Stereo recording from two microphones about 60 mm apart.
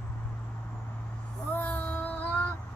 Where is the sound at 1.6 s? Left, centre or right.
Left.